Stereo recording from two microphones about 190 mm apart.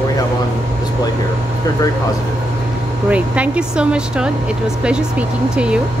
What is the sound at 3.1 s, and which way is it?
Speech, 5° right (ahead or behind).